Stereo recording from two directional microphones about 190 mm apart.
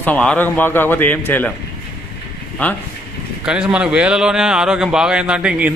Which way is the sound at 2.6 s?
10° left (ahead or behind).